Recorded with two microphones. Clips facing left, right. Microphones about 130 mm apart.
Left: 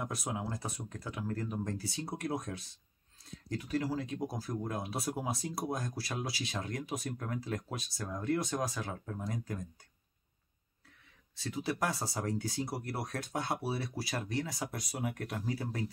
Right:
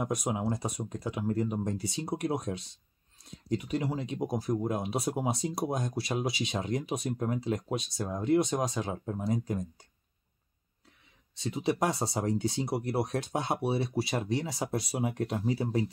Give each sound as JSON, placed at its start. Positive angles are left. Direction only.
{"t": 0.0, "sound": "speech", "side_deg": -15}
{"t": 11.3, "sound": "speech", "side_deg": -20}